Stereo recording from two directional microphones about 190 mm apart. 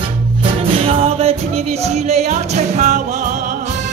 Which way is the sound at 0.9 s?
30° right (ahead or behind).